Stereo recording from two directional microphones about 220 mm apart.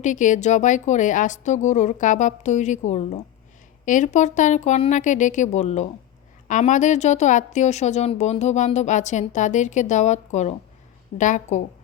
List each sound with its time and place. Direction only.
0.0 s speech: 35° left (ahead or behind)